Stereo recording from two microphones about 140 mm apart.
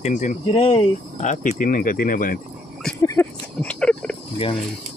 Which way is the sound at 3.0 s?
20° left (ahead or behind).